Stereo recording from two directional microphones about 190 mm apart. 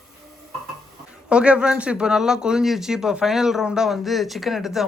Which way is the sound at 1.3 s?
5° right (ahead or behind).